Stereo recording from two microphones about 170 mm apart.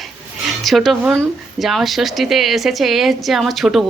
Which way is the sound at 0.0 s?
Centre (ahead or behind).